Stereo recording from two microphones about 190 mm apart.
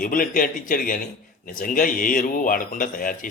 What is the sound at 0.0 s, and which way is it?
A man's voice, 45° left (ahead or behind).